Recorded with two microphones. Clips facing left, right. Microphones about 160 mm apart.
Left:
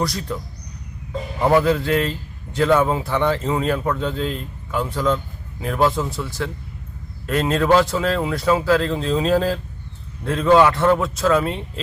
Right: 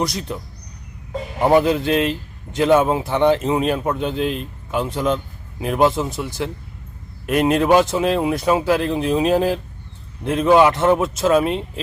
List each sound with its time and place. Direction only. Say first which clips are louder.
0.0 s a man's voice: right 1 dB; 20° right (ahead or behind)
1.4 s a man's voice: right 1 dB; 20° right (ahead or behind)